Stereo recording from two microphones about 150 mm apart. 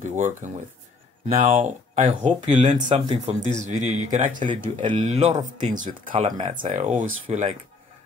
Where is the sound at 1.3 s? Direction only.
60° right (ahead or behind).